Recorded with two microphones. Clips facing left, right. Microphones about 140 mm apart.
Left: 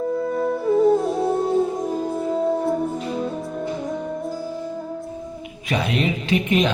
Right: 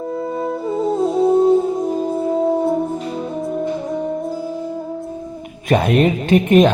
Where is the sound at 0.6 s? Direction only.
25° right (ahead or behind).